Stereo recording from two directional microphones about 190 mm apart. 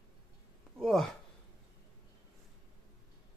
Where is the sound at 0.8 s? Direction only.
Centre (ahead or behind).